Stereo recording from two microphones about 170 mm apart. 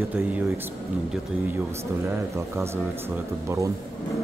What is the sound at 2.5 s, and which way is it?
Speech, 15° right (ahead or behind).